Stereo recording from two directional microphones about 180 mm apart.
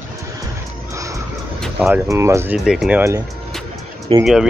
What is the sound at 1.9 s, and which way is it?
Speech, 15° right (ahead or behind).